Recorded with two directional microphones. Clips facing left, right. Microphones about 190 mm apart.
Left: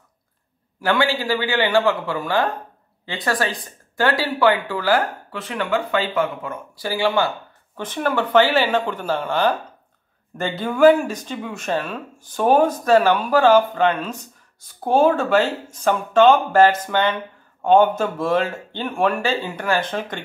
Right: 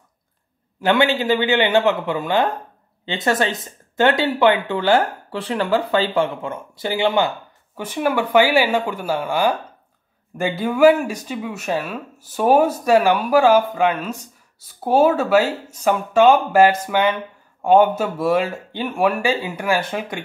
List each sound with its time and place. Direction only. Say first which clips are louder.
0.7 s speech: right 3 dB; 20° right (ahead or behind)